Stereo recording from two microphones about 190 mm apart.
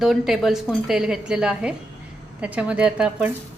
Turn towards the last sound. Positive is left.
turn(degrees=-5)  # may be behind; listen again after turning